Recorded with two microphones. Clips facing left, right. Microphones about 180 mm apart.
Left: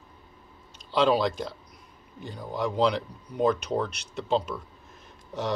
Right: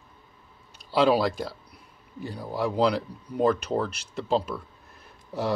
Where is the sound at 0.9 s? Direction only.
5° right (ahead or behind).